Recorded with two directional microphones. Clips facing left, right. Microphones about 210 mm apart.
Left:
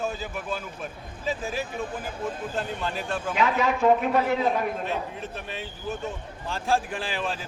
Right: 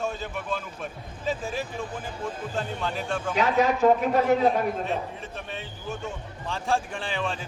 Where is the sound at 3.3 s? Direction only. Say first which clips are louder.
Right 2 dB; 40° right (ahead or behind).